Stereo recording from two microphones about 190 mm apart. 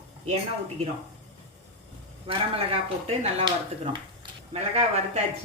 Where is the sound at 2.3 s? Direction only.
30° right (ahead or behind).